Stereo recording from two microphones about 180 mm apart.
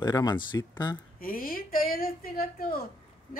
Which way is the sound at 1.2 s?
55° left (ahead or behind).